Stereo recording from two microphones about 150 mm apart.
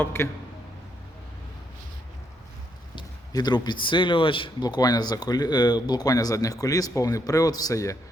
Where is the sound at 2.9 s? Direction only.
25° left (ahead or behind).